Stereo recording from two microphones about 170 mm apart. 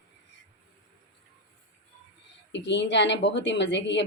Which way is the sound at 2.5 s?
90° left.